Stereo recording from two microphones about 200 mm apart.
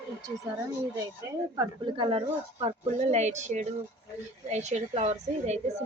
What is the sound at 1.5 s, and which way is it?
Speech, 25° right (ahead or behind).